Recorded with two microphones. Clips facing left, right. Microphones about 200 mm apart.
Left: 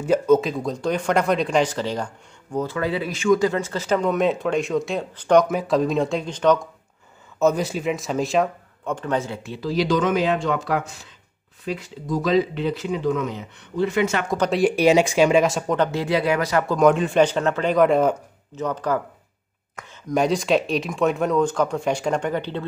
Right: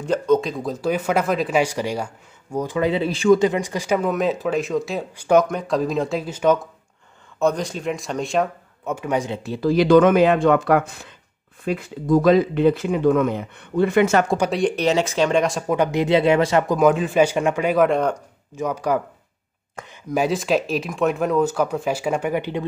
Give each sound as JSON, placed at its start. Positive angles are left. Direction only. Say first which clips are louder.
{"t": 0.0, "sound": "speech", "louder": "left 1 dB", "side_deg": 5}
{"t": 3.4, "sound": "speech", "louder": "right 1 dB", "side_deg": -15}
{"t": 5.5, "sound": "speech", "louder": "left 1 dB", "side_deg": 5}
{"t": 7.3, "sound": "speech", "louder": "left 1 dB", "side_deg": 5}
{"t": 9.6, "sound": "speech", "louder": "right 7 dB", "side_deg": -55}
{"t": 14.5, "sound": "speech", "louder": "left 3 dB", "side_deg": 10}
{"t": 15.7, "sound": "speech", "louder": "right 7 dB", "side_deg": -15}
{"t": 16.7, "sound": "speech", "louder": "left 2 dB", "side_deg": 0}
{"t": 18.6, "sound": "speech", "louder": "right 2 dB", "side_deg": -10}
{"t": 20.1, "sound": "speech", "louder": "left 1 dB", "side_deg": -5}